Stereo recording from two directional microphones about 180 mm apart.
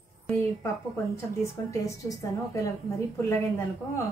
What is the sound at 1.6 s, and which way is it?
A woman's voice, 15° left (ahead or behind).